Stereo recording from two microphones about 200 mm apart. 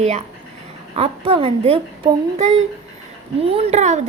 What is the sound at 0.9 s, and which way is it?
Speech, 30° right (ahead or behind).